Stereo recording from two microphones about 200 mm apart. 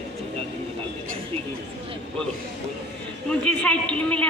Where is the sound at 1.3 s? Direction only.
25° right (ahead or behind).